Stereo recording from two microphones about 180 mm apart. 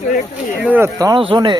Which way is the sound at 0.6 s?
10° right (ahead or behind).